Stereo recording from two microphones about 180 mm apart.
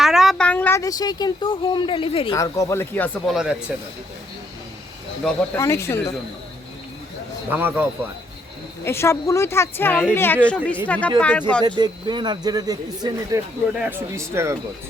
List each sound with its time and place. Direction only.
0.0 s speech: centre (ahead or behind); by 2.4 s 30° left (ahead or behind)
2.4 s a woman's voice: 15° left (ahead or behind)
3.2 s speech: 5° right (ahead or behind)
5.5 s a woman's voice: 15° left (ahead or behind)
7.5 s speech: 10° right (ahead or behind)
8.8 s a woman's voice: 15° left (ahead or behind)
11.8 s speech: 25° right (ahead or behind)
13.7 s speech: 10° right (ahead or behind)